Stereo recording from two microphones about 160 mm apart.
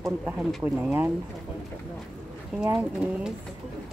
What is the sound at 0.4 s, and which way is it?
Speech, 5° right (ahead or behind).